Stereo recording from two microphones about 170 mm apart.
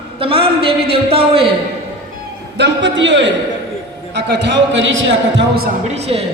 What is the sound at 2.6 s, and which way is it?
A man's voice, 90° right.